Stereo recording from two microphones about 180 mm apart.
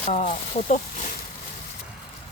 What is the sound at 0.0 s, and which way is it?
Speech, 40° left (ahead or behind).